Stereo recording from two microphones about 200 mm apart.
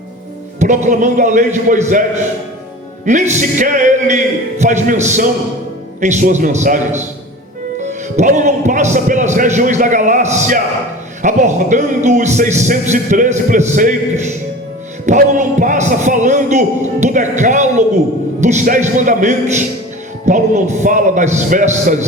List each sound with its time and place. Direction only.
0.6 s a man's voice: 40° right (ahead or behind)
3.1 s a man's voice: 40° right (ahead or behind)